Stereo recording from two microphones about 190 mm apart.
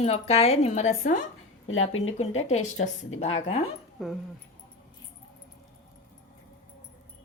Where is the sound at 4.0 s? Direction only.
Centre (ahead or behind).